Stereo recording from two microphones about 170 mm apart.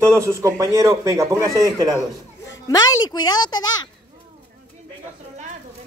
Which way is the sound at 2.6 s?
25° left (ahead or behind).